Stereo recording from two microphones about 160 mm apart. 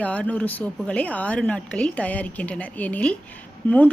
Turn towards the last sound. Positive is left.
turn(degrees=10)  # may be behind; listen again after turning